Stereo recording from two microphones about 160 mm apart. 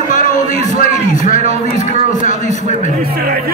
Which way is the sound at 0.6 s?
50° left (ahead or behind).